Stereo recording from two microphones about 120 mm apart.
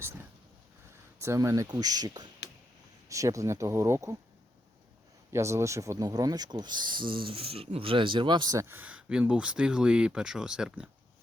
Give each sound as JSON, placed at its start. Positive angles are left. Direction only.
{"t": 1.2, "sound": "speech", "side_deg": -25}
{"t": 5.3, "sound": "speech", "side_deg": -25}
{"t": 8.5, "sound": "speech", "side_deg": -20}